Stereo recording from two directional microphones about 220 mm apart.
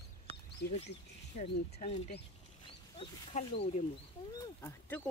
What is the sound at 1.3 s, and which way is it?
Speech, 30° left (ahead or behind).